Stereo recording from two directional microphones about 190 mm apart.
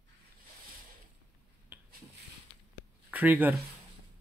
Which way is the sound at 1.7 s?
10° right (ahead or behind).